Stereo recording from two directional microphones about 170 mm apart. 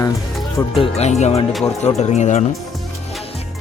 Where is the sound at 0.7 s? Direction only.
35° left (ahead or behind).